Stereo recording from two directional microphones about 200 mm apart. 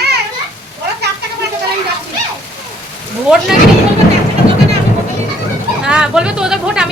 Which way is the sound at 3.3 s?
5° right (ahead or behind).